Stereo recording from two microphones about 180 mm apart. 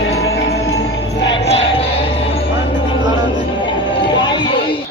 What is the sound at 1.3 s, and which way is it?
Music, 35° left (ahead or behind).